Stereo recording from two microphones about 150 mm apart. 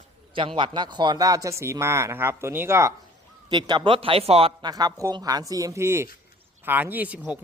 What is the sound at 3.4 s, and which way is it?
Speech, 30° right (ahead or behind).